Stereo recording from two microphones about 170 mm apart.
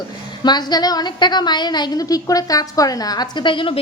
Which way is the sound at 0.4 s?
25° left (ahead or behind).